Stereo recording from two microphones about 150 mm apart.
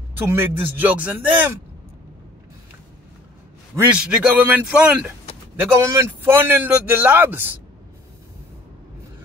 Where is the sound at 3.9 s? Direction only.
5° right (ahead or behind).